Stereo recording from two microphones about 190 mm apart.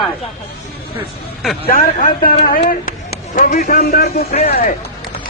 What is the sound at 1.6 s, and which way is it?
A man's voice, 45° left (ahead or behind).